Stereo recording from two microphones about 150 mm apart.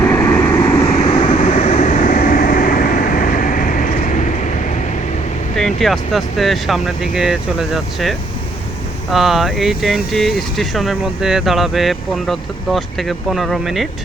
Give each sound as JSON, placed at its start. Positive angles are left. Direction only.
{"t": 0.0, "sound": "vehicle", "side_deg": 15}
{"t": 0.9, "sound": "vehicle", "side_deg": 45}
{"t": 5.5, "sound": "speech", "side_deg": 0}